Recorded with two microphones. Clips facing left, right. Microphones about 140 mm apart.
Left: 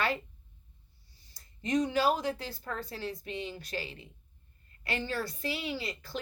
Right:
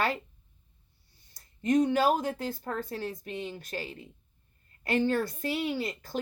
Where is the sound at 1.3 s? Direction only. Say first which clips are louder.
Right 5 dB; 50° right (ahead or behind).